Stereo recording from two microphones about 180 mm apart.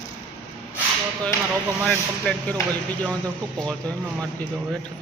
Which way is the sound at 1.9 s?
5° left (ahead or behind).